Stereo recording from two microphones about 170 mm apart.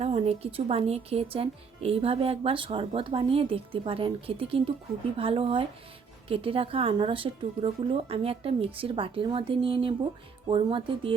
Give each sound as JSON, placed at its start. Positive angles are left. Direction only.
{"t": 0.0, "sound": "speech", "side_deg": -35}